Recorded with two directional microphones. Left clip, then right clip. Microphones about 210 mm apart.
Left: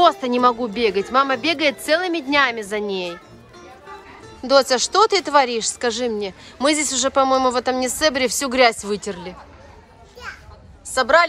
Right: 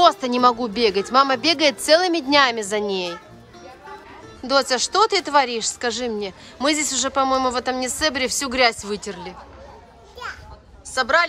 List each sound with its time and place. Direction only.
0.0 s speech: centre (ahead or behind)
4.4 s speech: 5° right (ahead or behind)
11.0 s speech: centre (ahead or behind)